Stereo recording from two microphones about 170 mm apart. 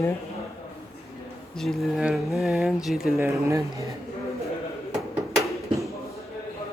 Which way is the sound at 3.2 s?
15° right (ahead or behind).